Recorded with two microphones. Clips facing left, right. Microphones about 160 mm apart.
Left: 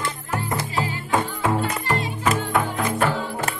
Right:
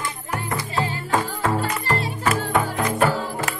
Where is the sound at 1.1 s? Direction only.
Centre (ahead or behind).